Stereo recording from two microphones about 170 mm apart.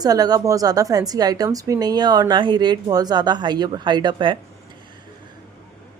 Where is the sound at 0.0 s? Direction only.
20° right (ahead or behind).